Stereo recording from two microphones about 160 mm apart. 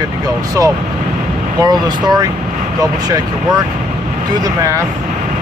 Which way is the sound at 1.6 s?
25° right (ahead or behind).